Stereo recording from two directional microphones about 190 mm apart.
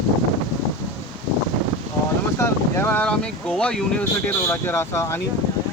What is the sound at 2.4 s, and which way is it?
Speech, 10° left (ahead or behind).